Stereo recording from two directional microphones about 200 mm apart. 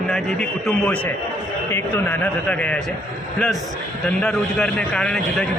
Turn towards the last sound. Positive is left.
turn(degrees=5)  # may be behind; listen again after turning